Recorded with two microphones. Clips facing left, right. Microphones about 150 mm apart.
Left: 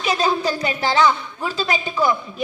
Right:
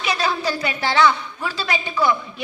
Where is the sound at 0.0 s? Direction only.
40° left (ahead or behind).